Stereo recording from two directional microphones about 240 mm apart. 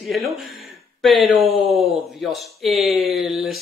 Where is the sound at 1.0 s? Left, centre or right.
Centre.